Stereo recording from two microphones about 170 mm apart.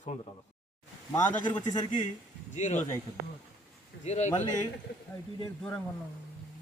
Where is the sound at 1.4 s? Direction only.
25° left (ahead or behind).